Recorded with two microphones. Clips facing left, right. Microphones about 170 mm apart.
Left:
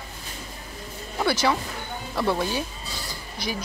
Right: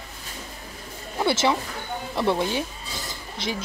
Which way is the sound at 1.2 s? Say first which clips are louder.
Right 1 dB; 25° right (ahead or behind).